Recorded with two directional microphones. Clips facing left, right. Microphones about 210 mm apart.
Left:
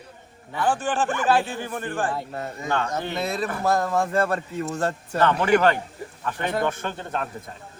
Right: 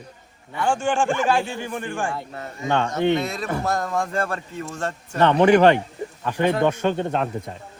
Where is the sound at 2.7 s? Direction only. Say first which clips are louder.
Right 7 dB; 25° right (ahead or behind).